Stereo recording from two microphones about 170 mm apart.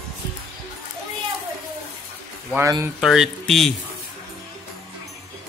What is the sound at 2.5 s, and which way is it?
Speech, 15° right (ahead or behind).